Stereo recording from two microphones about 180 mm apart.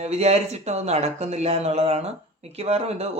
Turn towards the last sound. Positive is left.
turn(degrees=-35)  # may be behind; listen again after turning